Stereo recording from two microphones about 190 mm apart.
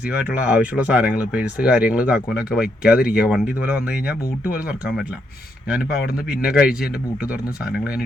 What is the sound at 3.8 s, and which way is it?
Speech, 55° left (ahead or behind).